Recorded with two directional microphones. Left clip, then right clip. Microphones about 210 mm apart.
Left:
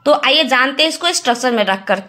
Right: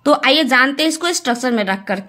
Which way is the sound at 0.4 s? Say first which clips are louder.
Left 1 dB; 30° right (ahead or behind).